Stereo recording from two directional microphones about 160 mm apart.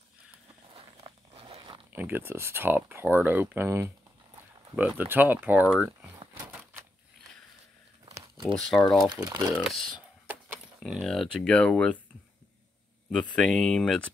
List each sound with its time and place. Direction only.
1.3 s crunch: 35° right (ahead or behind)
1.9 s speech: 15° right (ahead or behind)
6.3 s a sound: 10° right (ahead or behind)
8.5 s speech: 5° left (ahead or behind)
9.1 s speech: 25° right (ahead or behind)
9.6 s speech: centre (ahead or behind)
13.1 s speech: 5° left (ahead or behind)